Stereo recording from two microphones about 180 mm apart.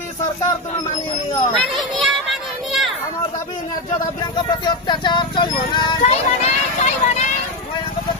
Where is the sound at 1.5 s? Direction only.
Centre (ahead or behind).